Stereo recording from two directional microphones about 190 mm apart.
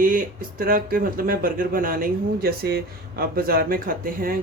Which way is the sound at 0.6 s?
50° right (ahead or behind).